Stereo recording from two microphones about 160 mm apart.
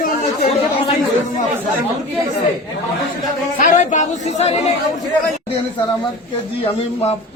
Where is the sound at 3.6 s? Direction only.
50° left (ahead or behind).